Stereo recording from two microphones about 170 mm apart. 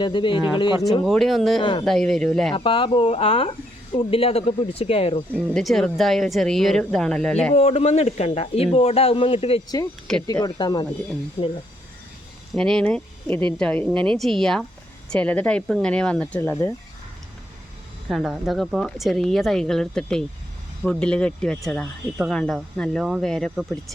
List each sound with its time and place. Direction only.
0.0 s speech: 30° left (ahead or behind)
1.0 s speech: centre (ahead or behind)
2.6 s speech: 30° left (ahead or behind)
5.5 s speech: centre (ahead or behind)
7.5 s speech: 40° left (ahead or behind)
10.1 s speech: 5° left (ahead or behind)
10.4 s speech: 25° left (ahead or behind)
12.5 s speech: 5° left (ahead or behind)
18.1 s speech: centre (ahead or behind)